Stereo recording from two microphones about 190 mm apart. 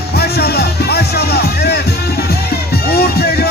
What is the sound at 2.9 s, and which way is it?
Music, 55° left (ahead or behind).